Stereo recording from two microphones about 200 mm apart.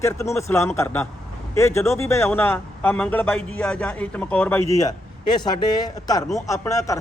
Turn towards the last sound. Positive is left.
turn(degrees=15)  # may be behind; listen again after turning